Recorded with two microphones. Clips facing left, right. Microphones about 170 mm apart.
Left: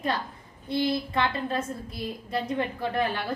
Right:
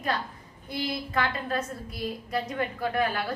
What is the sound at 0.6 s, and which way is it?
A woman's voice, 25° left (ahead or behind).